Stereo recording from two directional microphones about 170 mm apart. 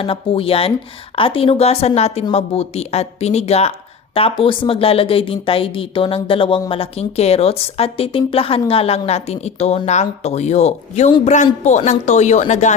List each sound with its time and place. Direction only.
0.0 s speech: 35° left (ahead or behind)